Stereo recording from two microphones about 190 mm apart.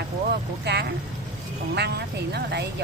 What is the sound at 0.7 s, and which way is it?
Vehicle, 60° right (ahead or behind).